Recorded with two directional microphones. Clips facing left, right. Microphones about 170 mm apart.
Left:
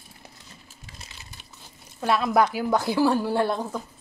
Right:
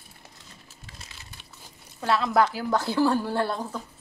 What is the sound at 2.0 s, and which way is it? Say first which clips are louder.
A woman's voice: left 1 dB; 15° left (ahead or behind).